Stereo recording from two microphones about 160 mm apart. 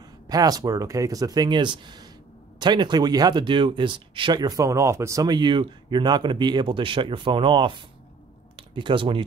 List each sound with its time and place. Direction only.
0.3 s speech: 25° right (ahead or behind)